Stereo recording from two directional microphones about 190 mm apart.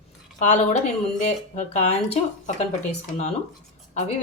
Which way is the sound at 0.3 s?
40° left (ahead or behind).